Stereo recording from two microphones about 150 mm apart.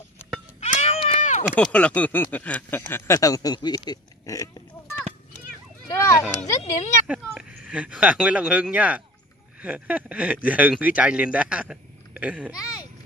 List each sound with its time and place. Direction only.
0.6 s a sound: 50° left (ahead or behind)
1.5 s speech: 10° left (ahead or behind); by 4.5 s 25° left (ahead or behind)
5.9 s speech: 20° left (ahead or behind)
7.3 s speech: 5° right (ahead or behind)